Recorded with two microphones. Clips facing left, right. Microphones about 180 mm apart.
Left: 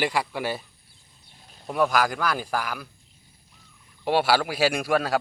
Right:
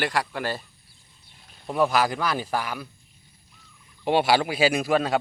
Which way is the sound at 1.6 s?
5° right (ahead or behind).